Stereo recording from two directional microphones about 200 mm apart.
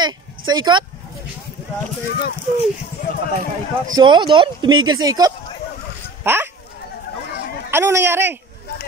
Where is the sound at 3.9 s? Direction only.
20° right (ahead or behind).